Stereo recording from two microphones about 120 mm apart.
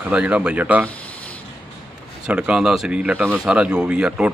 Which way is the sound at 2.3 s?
10° right (ahead or behind).